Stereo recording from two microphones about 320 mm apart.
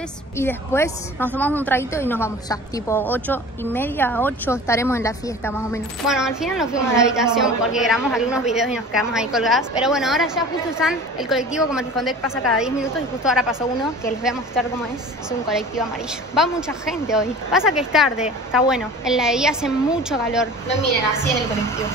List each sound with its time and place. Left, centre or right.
0.4 s a woman's voice: centre
16.3 s a woman's voice: centre